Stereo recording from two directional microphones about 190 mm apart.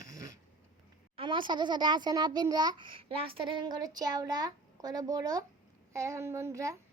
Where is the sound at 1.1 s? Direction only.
25° right (ahead or behind).